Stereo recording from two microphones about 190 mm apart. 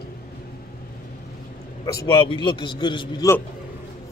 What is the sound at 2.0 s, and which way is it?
A man's voice, 25° left (ahead or behind).